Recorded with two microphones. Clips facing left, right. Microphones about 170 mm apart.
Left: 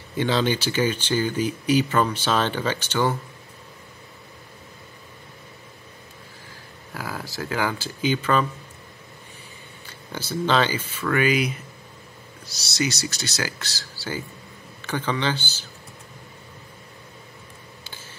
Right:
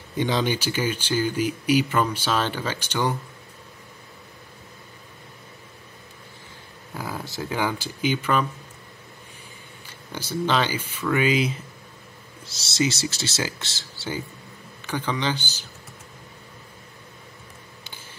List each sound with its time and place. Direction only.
0.2 s speech: 15° right (ahead or behind)
6.9 s speech: 20° right (ahead or behind)
9.8 s speech: 15° right (ahead or behind)
11.2 s speech: 25° right (ahead or behind)